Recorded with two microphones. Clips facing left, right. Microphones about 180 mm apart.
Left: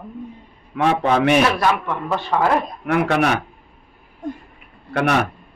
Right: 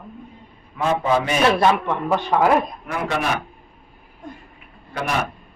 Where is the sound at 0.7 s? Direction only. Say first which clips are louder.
Left 2 dB; 70° left (ahead or behind).